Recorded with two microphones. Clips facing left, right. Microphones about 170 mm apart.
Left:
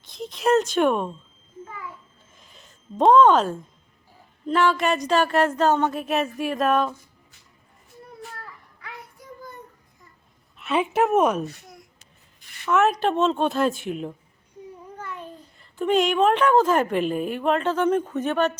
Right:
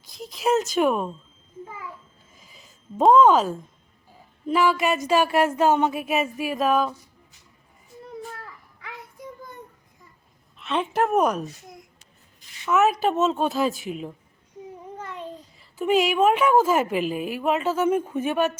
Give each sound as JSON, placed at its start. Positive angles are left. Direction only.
{"t": 0.0, "sound": "speech", "side_deg": 0}
{"t": 2.3, "sound": "a sound", "side_deg": -5}
{"t": 4.4, "sound": "a woman's voice", "side_deg": -5}
{"t": 8.8, "sound": "child singing", "side_deg": -20}
{"t": 10.6, "sound": "speech", "side_deg": 5}
{"t": 12.6, "sound": "speech", "side_deg": -5}
{"t": 15.0, "sound": "babbling", "side_deg": -20}
{"t": 15.5, "sound": "a woman's voice", "side_deg": -5}